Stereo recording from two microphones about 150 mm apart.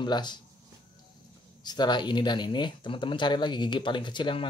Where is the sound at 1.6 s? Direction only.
30° left (ahead or behind).